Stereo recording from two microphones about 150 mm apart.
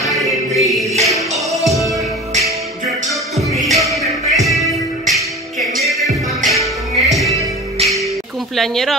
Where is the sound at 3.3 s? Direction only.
Centre (ahead or behind).